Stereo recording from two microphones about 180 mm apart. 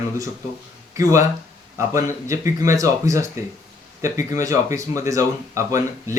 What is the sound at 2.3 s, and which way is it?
Speech, 15° right (ahead or behind).